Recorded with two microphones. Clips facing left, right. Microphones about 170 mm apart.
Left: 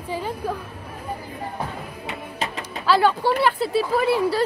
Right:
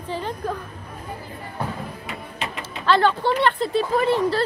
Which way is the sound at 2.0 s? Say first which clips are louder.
Left 6 dB; 40° left (ahead or behind).